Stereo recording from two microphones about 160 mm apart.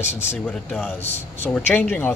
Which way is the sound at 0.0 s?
15° left (ahead or behind).